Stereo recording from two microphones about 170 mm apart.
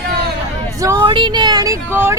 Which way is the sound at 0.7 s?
20° right (ahead or behind).